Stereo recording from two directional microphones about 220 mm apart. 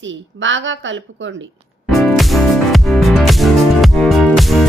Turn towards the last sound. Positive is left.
turn(degrees=0)  # may be behind; listen again after turning